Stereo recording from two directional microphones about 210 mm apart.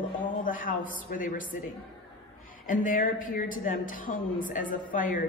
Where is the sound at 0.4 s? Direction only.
40° left (ahead or behind).